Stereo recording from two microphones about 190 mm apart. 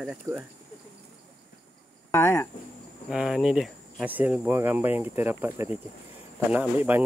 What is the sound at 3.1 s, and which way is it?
Speech, 5° right (ahead or behind).